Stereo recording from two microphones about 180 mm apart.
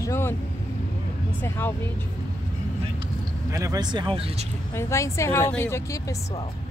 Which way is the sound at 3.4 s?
15° right (ahead or behind).